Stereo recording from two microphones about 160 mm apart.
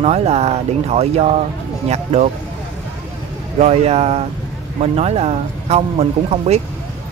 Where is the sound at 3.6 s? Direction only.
40° right (ahead or behind).